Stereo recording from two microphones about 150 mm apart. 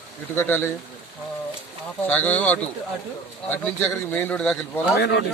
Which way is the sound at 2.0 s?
10° left (ahead or behind).